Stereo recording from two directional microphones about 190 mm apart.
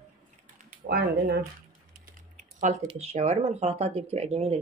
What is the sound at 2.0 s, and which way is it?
Typing, 45° right (ahead or behind).